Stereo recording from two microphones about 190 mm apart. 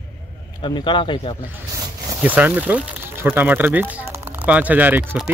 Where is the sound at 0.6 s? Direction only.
25° left (ahead or behind).